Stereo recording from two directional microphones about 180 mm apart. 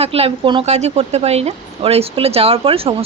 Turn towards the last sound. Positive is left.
turn(degrees=-30)  # may be behind; listen again after turning